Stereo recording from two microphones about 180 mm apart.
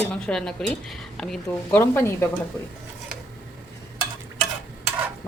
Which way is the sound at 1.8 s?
15° left (ahead or behind).